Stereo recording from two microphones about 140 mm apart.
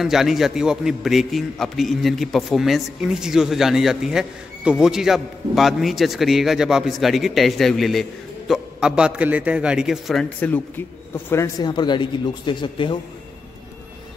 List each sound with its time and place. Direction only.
0.0 s a man's voice: centre (ahead or behind)
11.2 s speech: 20° left (ahead or behind)